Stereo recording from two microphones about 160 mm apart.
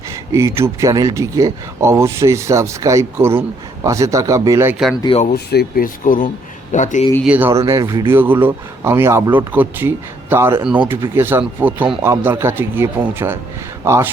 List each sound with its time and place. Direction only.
0.3 s speech: 15° right (ahead or behind)
5.3 s a man's voice: 80° left; by 7.1 s 50° left (ahead or behind)
7.3 s speech: 10° right (ahead or behind)